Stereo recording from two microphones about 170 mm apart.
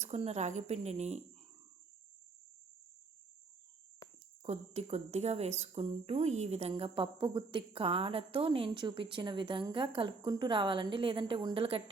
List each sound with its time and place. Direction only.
0.0 s speech: 40° right (ahead or behind)
4.4 s speech: 40° right (ahead or behind)